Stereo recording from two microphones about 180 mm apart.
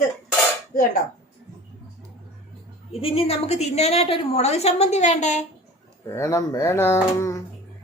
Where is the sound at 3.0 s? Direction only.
35° left (ahead or behind).